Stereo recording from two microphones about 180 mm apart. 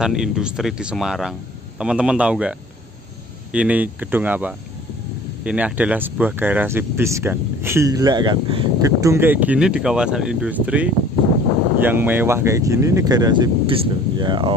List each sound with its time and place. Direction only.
0.0 s speech: 5° right (ahead or behind)
3.5 s speech: 10° right (ahead or behind); by 8.9 s 25° right (ahead or behind)
9.0 s speech: 15° right (ahead or behind)